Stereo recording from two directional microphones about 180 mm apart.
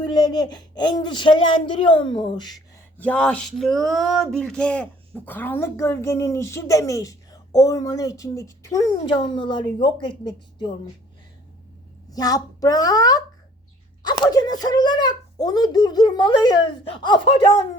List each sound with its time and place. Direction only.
0.1 s a child's voice: 20° left (ahead or behind)
3.0 s speech: 5° left (ahead or behind); by 10.7 s 25° left (ahead or behind)
12.1 s a child's voice: 20° left (ahead or behind)